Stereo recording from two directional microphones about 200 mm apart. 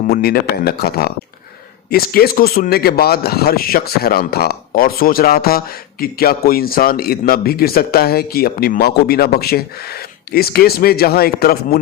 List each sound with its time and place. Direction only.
0.1 s speech: 50° left (ahead or behind)